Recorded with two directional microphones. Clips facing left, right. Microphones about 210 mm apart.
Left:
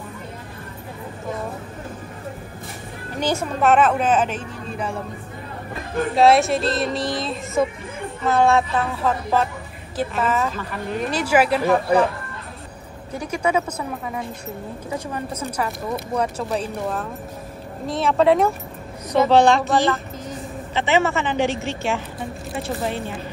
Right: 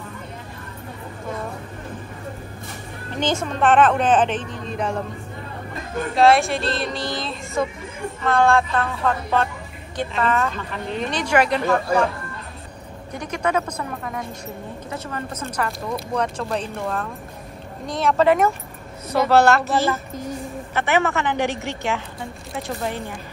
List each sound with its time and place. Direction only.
3.1 s a woman's voice: 10° left (ahead or behind)
6.1 s a woman's voice: centre (ahead or behind)
13.1 s a woman's voice: 10° left (ahead or behind)
20.7 s a woman's voice: 15° left (ahead or behind)
21.3 s a woman's voice: 15° right (ahead or behind)